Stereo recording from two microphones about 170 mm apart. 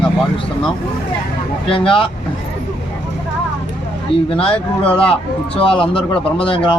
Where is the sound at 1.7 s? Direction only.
30° left (ahead or behind).